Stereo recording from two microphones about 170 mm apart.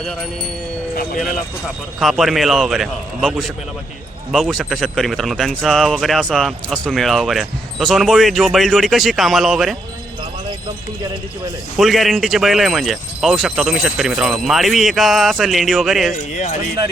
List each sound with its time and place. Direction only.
2.0 s a man's voice: centre (ahead or behind)
11.8 s a man's voice: centre (ahead or behind)
16.3 s speech: 45° left (ahead or behind)